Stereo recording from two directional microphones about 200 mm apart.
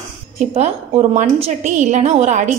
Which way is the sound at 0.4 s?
35° right (ahead or behind).